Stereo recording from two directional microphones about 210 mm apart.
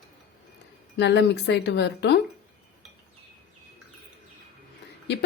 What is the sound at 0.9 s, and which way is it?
A woman's voice, 55° left (ahead or behind).